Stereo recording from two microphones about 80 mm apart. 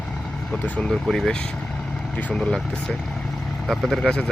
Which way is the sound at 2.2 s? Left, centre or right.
Centre.